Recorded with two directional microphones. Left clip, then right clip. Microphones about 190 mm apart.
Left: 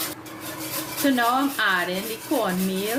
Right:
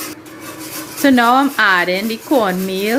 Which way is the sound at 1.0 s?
50° right (ahead or behind).